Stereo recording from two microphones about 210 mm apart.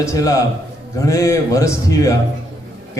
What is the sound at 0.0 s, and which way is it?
A man's voice, 15° left (ahead or behind).